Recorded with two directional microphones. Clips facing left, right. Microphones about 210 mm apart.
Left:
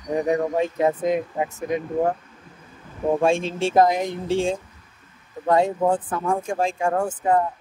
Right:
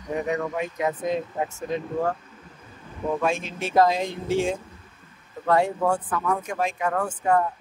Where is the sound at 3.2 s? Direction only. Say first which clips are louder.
Left 6 dB; 30° left (ahead or behind).